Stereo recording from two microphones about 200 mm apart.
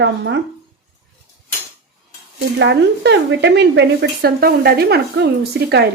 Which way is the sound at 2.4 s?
60° right (ahead or behind).